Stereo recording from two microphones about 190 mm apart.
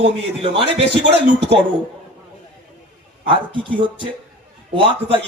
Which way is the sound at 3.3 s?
25° right (ahead or behind).